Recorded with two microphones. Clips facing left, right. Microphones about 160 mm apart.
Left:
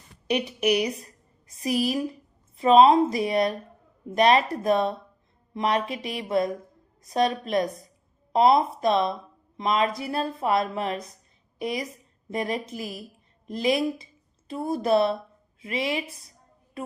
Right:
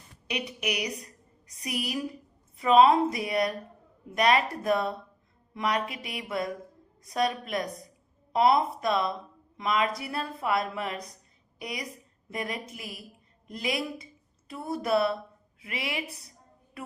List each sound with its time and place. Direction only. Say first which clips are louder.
0.3 s a woman's voice: left 9 dB; 30° left (ahead or behind)